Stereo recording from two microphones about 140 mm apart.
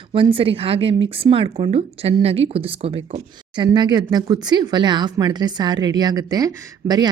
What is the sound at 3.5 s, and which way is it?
Speech, 30° right (ahead or behind).